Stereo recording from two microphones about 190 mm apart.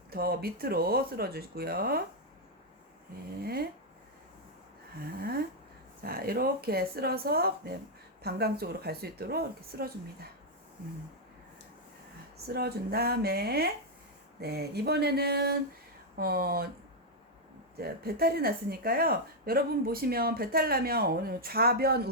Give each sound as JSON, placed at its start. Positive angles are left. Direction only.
{"t": 0.1, "sound": "speech", "side_deg": -55}
{"t": 3.4, "sound": "speech", "side_deg": -55}
{"t": 6.1, "sound": "speech", "side_deg": -50}
{"t": 12.5, "sound": "speech", "side_deg": -55}
{"t": 17.7, "sound": "speech", "side_deg": -55}